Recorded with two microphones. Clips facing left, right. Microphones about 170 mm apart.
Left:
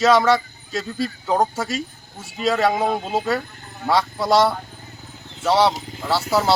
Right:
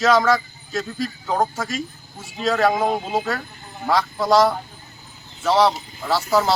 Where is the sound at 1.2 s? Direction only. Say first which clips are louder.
Left 2 dB; 10° left (ahead or behind).